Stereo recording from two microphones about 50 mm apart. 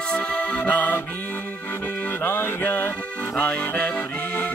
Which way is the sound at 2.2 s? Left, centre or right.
Left.